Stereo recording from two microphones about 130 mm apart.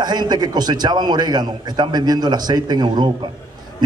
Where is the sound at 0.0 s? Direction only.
35° right (ahead or behind).